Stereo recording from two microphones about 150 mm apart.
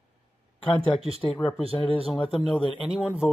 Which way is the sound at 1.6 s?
40° right (ahead or behind).